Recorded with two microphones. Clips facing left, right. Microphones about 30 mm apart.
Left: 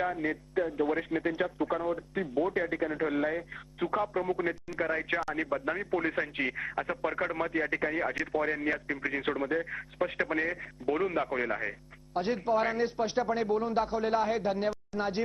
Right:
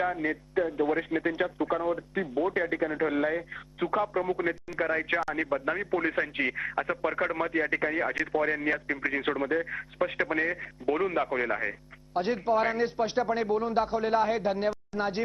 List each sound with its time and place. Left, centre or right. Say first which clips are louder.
0.0 s speech: right 2 dB; centre